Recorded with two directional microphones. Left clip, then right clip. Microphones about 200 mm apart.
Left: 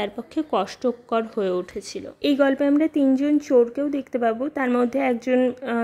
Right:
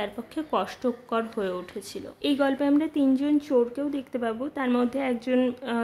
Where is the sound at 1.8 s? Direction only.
15° left (ahead or behind).